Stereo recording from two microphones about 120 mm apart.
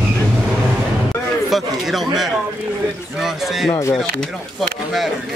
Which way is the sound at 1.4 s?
Centre (ahead or behind).